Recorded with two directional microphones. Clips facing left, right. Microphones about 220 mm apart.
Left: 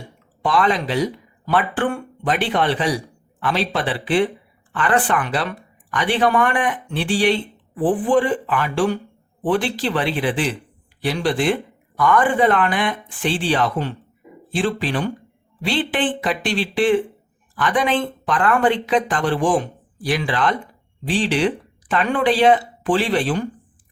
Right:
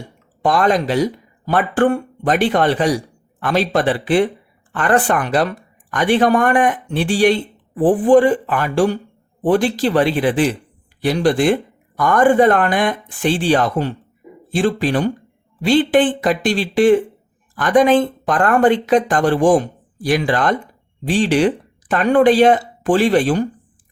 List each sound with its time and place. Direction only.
0.4 s speech: 45° right (ahead or behind)